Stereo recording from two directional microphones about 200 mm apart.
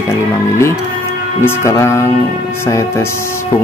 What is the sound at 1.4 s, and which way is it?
Speech, 10° left (ahead or behind).